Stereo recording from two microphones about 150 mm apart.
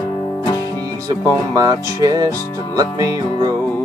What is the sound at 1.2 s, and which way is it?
Music, 25° right (ahead or behind).